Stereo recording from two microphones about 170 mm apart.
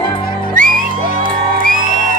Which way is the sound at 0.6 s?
50° right (ahead or behind).